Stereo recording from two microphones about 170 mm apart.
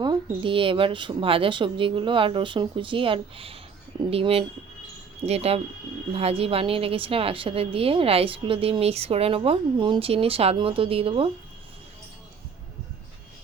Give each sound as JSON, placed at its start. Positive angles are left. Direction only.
{"t": 0.0, "sound": "a woman's voice", "side_deg": -30}